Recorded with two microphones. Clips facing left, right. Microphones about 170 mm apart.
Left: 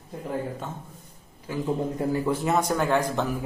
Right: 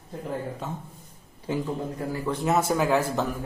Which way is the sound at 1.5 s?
25° right (ahead or behind).